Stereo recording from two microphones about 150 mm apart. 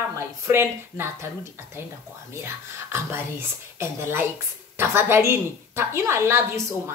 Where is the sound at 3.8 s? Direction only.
15° right (ahead or behind).